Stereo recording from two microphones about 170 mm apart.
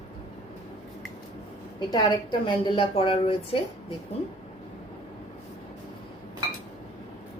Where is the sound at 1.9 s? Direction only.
25° left (ahead or behind).